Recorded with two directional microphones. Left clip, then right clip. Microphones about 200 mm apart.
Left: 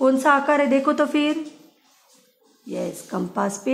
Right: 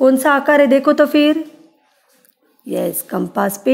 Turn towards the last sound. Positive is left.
turn(degrees=-30)  # may be behind; listen again after turning